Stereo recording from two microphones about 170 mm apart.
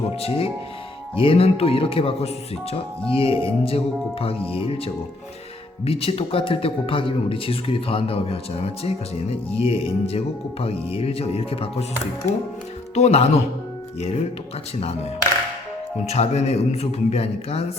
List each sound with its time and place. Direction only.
0.2 s speech: 35° left (ahead or behind)
5.8 s speech: 35° left (ahead or behind)
12.9 s speech: 40° left (ahead or behind)
16.0 s speech: 40° left (ahead or behind)